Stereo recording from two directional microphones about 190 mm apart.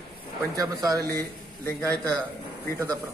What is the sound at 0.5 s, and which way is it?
Speech, 20° right (ahead or behind).